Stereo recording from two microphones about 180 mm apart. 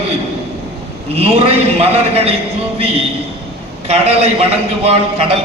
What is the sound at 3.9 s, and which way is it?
A man's voice, 35° right (ahead or behind).